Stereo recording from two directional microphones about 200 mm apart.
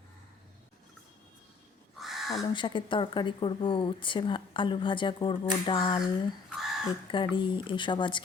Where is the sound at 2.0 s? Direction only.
Centre (ahead or behind).